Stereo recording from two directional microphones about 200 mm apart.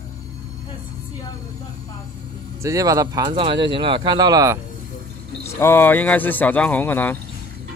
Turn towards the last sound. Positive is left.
turn(degrees=10)  # may be behind; listen again after turning